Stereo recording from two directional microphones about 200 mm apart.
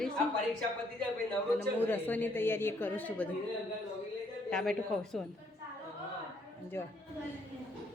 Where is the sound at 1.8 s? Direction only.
10° left (ahead or behind).